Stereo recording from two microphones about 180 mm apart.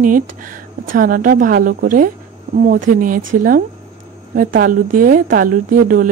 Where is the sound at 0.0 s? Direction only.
50° right (ahead or behind).